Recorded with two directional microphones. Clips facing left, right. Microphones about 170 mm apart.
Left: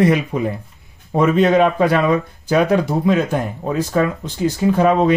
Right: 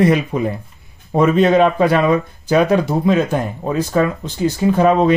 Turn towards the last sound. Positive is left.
turn(degrees=-25)  # may be behind; listen again after turning